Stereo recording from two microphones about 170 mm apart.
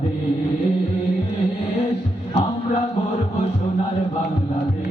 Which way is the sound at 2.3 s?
40° left (ahead or behind).